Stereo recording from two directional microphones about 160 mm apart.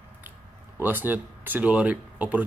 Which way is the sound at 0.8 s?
10° right (ahead or behind).